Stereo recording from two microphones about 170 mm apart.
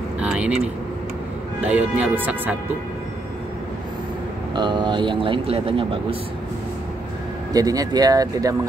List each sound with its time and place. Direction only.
0.2 s vehicle: 5° right (ahead or behind)
1.7 s speech: 5° right (ahead or behind)
4.6 s speech: 25° right (ahead or behind)
7.5 s speech: 20° right (ahead or behind)